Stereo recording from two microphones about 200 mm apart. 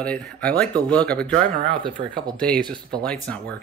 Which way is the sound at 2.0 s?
30° right (ahead or behind).